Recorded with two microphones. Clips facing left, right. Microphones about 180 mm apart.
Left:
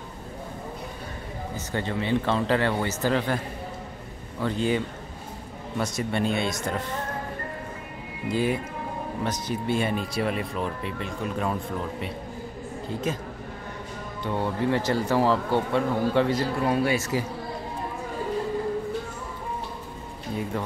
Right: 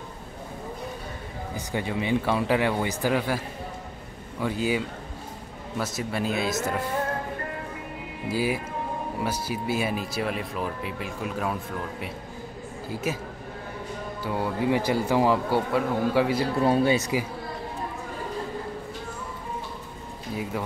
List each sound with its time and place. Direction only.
1.7 s speech: 10° right (ahead or behind)
8.3 s speech: 5° right (ahead or behind)
13.0 s speech: 5° right (ahead or behind)
14.2 s speech: 5° right (ahead or behind)
16.6 s speech: 25° right (ahead or behind)